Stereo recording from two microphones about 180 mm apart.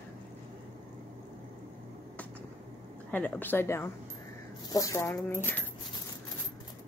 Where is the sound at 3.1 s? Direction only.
10° left (ahead or behind).